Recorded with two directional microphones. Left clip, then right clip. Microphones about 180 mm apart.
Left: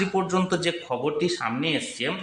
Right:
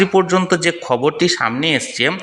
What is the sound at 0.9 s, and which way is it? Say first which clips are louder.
Speech: right 12 dB; 45° right (ahead or behind).